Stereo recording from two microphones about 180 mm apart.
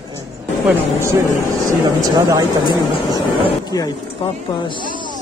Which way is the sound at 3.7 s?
20° left (ahead or behind).